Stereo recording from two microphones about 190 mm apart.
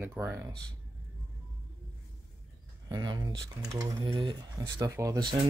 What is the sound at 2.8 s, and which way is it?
Speech, 20° right (ahead or behind).